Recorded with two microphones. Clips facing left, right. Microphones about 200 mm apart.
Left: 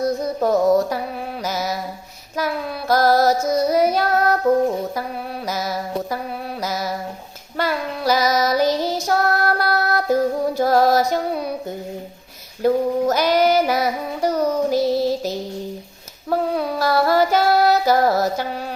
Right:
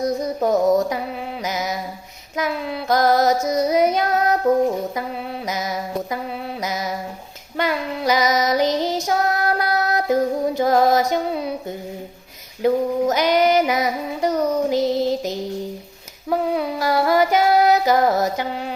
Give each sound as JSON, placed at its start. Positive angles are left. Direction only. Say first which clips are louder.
{"t": 0.0, "sound": "music", "louder": "left 1 dB", "side_deg": -15}
{"t": 1.5, "sound": "mantra", "louder": "left 1 dB", "side_deg": -15}
{"t": 2.9, "sound": "female singing", "louder": "left 1 dB", "side_deg": -20}
{"t": 5.5, "sound": "music", "louder": "left 1 dB", "side_deg": -20}
{"t": 6.6, "sound": "a sound", "louder": "left 1 dB", "side_deg": -20}
{"t": 7.5, "sound": "child singing", "louder": "even", "side_deg": -15}
{"t": 9.0, "sound": "music", "louder": "left 1 dB", "side_deg": -15}
{"t": 12.6, "sound": "female singing", "louder": "left 1 dB", "side_deg": -20}